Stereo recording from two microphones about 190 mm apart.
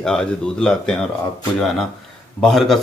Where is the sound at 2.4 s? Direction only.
Centre (ahead or behind).